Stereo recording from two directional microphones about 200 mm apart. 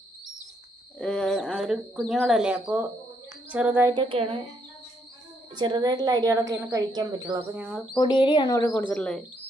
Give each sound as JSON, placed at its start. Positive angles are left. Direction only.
{"t": 0.9, "sound": "speech", "side_deg": 5}
{"t": 3.5, "sound": "a sound", "side_deg": -10}
{"t": 3.9, "sound": "speech", "side_deg": -25}
{"t": 5.5, "sound": "speech", "side_deg": -20}
{"t": 7.5, "sound": "speech", "side_deg": -5}
{"t": 7.9, "sound": "speech", "side_deg": 25}